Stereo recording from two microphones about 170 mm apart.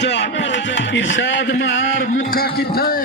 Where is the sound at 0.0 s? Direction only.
90° left.